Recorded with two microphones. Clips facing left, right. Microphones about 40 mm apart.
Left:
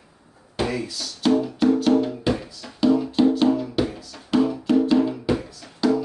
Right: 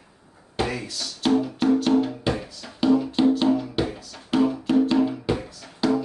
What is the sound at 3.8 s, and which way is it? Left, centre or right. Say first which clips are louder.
Music: left 1 dB; centre.